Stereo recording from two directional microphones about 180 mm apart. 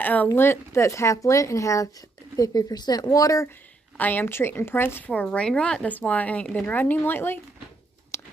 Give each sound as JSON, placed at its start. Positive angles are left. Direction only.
{"t": 0.0, "sound": "speech", "side_deg": 10}
{"t": 8.1, "sound": "chewing", "side_deg": 15}